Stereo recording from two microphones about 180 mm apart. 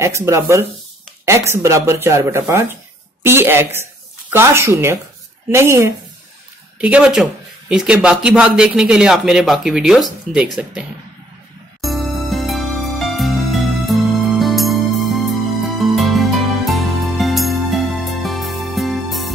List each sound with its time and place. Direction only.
0.0 s speech: 15° right (ahead or behind)
11.8 s music: centre (ahead or behind)